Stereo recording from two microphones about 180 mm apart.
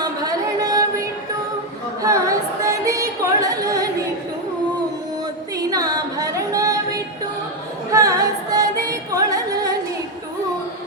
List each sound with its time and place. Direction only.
0.0 s a sound: 20° right (ahead or behind)
2.0 s music: 20° right (ahead or behind)
5.5 s singing: 20° right (ahead or behind)
7.9 s music: 20° right (ahead or behind)